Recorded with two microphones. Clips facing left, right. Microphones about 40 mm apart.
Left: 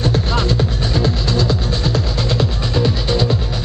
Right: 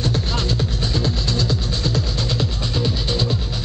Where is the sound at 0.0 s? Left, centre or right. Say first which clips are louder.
Left 5 dB; centre.